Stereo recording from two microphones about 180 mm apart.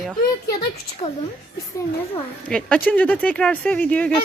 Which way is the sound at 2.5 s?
5° left (ahead or behind).